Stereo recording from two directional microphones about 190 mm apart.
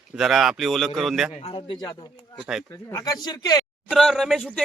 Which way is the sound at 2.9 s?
20° left (ahead or behind).